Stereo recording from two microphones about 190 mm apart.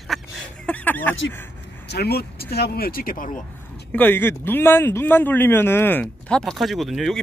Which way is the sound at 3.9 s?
10° left (ahead or behind).